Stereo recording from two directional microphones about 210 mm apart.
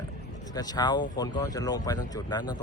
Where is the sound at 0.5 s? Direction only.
20° left (ahead or behind).